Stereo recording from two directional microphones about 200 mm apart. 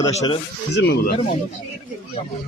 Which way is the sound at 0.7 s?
60° left (ahead or behind).